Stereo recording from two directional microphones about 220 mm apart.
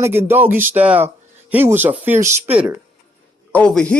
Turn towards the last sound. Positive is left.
turn(degrees=5)  # may be behind; listen again after turning